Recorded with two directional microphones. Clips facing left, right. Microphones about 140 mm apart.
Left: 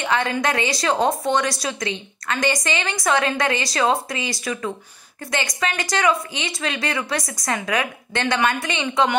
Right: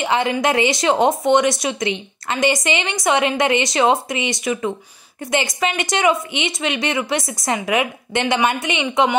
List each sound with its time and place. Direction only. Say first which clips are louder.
0.0 s speech: right 3 dB; 25° right (ahead or behind)